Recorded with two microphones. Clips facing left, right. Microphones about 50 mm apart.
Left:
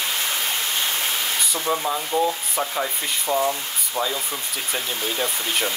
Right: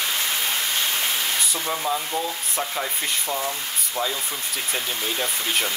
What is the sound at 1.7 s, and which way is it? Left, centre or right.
Speech, centre.